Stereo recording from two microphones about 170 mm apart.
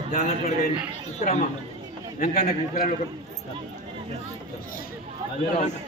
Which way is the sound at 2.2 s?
55° left (ahead or behind).